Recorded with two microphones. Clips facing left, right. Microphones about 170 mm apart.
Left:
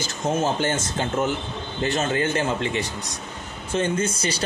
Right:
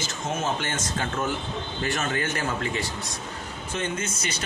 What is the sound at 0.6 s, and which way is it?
Speech, 30° left (ahead or behind).